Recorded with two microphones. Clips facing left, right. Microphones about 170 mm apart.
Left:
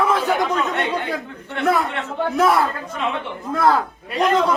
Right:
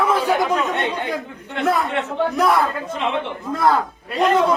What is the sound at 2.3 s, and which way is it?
Speech, centre (ahead or behind).